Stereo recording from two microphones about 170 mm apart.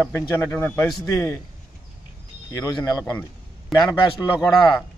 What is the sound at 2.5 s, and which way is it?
A man's voice, 20° left (ahead or behind).